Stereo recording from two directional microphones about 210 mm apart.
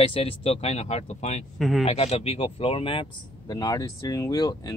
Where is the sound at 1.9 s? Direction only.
30° left (ahead or behind).